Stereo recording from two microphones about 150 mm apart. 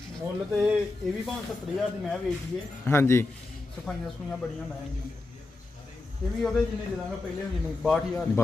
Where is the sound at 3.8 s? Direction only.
5° left (ahead or behind).